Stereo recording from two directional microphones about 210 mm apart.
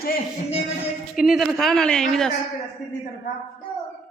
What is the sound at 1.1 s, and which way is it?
A woman's voice, centre (ahead or behind).